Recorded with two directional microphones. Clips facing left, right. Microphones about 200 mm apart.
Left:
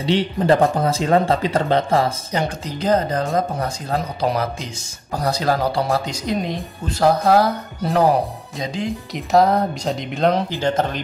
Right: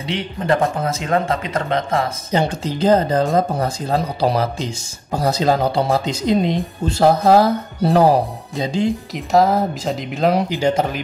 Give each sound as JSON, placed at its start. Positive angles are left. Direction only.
{"t": 0.0, "sound": "speech", "side_deg": 30}
{"t": 2.3, "sound": "speech", "side_deg": -30}
{"t": 9.1, "sound": "speech", "side_deg": 0}